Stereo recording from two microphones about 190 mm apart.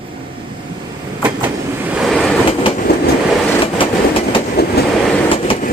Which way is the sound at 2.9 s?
55° left (ahead or behind).